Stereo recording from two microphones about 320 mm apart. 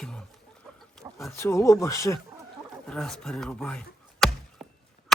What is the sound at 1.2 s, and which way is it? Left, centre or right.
Speech, centre.